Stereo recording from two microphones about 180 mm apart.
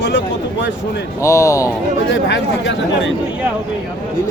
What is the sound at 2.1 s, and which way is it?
Speech, 90° left.